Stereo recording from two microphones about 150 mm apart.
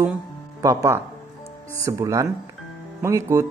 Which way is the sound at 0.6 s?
20° right (ahead or behind).